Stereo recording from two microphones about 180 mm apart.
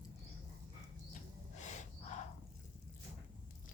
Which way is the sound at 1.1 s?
40° left (ahead or behind).